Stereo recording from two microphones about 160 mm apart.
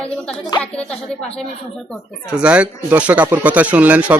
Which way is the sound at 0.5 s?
25° left (ahead or behind).